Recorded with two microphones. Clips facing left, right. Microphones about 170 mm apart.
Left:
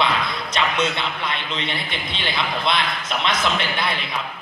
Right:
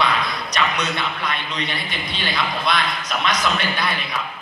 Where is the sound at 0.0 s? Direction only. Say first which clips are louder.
Even; 25° left (ahead or behind).